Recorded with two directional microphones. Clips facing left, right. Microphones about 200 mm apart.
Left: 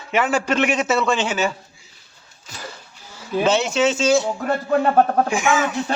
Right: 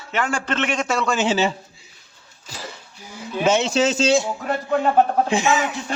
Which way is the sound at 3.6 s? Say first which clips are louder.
Even; 35° right (ahead or behind).